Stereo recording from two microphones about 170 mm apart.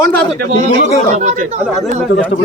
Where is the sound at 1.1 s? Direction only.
40° right (ahead or behind).